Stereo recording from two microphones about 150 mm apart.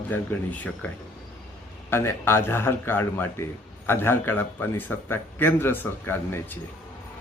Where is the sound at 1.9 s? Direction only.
15° left (ahead or behind).